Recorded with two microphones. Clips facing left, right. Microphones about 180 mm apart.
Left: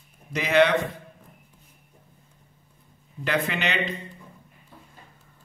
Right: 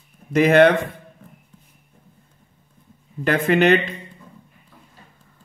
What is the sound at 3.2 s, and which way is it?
Speech, 50° right (ahead or behind).